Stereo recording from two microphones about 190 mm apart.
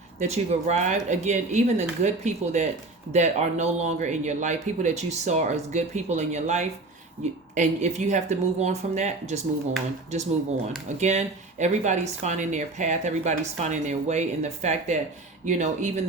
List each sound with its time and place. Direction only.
0.2 s speech: 35° right (ahead or behind)
10.8 s speech: 35° right (ahead or behind)